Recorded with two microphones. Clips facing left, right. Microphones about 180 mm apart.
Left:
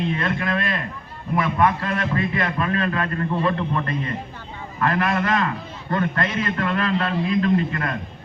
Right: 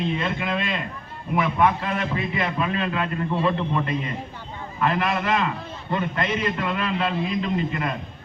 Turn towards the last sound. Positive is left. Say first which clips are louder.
# left 4 dB
turn(degrees=-10)  # may be behind; listen again after turning